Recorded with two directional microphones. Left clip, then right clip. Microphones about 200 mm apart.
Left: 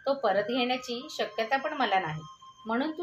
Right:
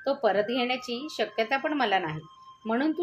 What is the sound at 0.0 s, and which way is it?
Speech, 35° right (ahead or behind).